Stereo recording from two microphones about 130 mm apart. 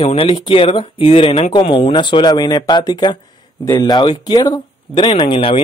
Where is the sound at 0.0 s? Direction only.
45° left (ahead or behind).